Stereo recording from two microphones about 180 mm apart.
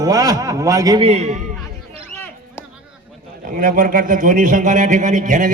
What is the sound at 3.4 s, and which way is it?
A man's voice, 50° right (ahead or behind).